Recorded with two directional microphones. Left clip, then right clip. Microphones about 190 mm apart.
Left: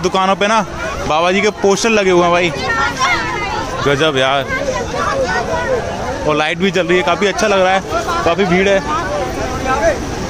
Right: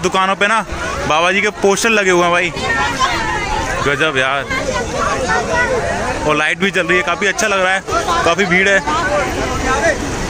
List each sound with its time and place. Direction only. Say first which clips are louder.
0.0 s a man's voice: even; 10° left (ahead or behind)
3.8 s a man's voice: left 3 dB; 20° left (ahead or behind)
6.2 s a man's voice: even; 10° left (ahead or behind)